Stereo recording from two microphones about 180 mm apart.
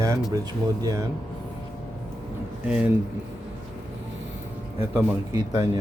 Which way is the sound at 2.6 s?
5° right (ahead or behind).